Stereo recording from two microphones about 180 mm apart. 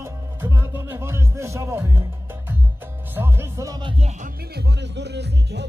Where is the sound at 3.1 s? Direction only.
15° right (ahead or behind).